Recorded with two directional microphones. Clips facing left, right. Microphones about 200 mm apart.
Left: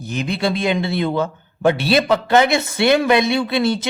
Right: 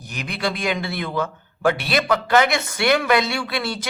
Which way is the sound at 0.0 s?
25° left (ahead or behind).